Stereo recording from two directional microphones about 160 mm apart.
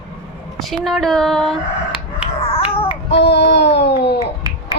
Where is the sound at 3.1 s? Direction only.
90° left.